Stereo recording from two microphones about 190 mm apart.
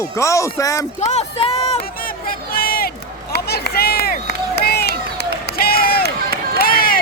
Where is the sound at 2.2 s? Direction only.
50° left (ahead or behind).